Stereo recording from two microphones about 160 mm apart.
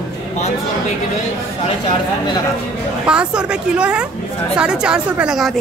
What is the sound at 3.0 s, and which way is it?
A woman's voice, 5° right (ahead or behind).